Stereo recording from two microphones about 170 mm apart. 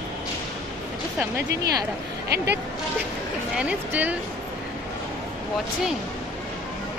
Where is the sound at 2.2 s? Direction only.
70° right (ahead or behind).